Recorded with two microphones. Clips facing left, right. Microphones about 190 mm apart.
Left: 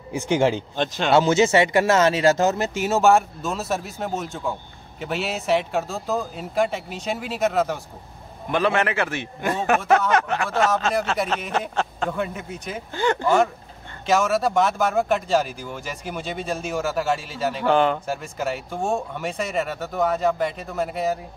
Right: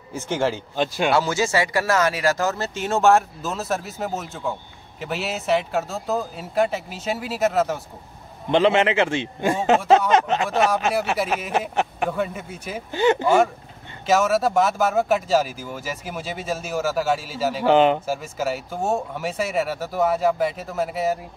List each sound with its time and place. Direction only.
0.1 s speech: 15° left (ahead or behind)
0.7 s speech: 10° right (ahead or behind)
1.1 s speech: 20° left (ahead or behind); by 7.8 s centre (ahead or behind)
8.5 s a man's voice: 20° right (ahead or behind)
11.7 s a sound: 15° right (ahead or behind)
12.1 s speech: 5° right (ahead or behind)
12.9 s a man's voice: 20° right (ahead or behind)
14.0 s speech: 5° right (ahead or behind)
17.6 s a man's voice: 20° right (ahead or behind)
18.0 s speech: 5° right (ahead or behind)